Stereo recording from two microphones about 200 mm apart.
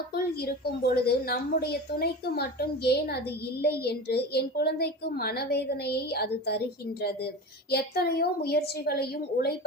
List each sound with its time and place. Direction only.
0.1 s a woman's voice: 50° left (ahead or behind)
7.7 s a woman's voice: 50° left (ahead or behind)